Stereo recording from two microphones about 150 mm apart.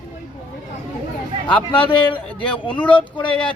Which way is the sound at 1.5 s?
35° left (ahead or behind).